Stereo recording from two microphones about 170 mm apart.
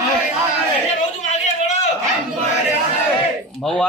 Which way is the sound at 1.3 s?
45° left (ahead or behind).